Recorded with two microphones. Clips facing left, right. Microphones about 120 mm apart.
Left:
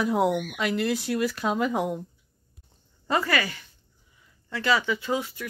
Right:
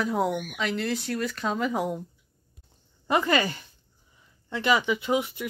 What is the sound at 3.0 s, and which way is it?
Speech, 15° right (ahead or behind).